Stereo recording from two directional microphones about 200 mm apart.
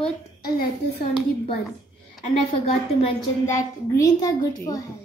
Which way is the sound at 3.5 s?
15° left (ahead or behind).